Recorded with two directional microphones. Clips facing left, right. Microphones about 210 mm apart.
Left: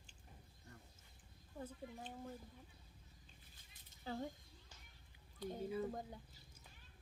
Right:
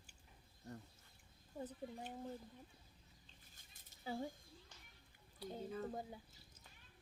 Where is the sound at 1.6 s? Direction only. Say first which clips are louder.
Right 2 dB; 15° right (ahead or behind).